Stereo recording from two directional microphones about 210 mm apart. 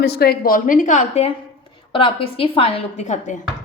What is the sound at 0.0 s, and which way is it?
A woman's voice, 50° left (ahead or behind).